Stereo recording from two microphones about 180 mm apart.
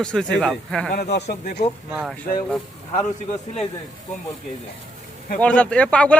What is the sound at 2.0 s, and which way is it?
Speech, 5° right (ahead or behind).